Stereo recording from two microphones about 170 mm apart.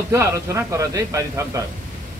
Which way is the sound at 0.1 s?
15° right (ahead or behind).